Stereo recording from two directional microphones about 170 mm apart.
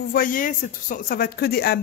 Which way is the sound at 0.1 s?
55° left (ahead or behind).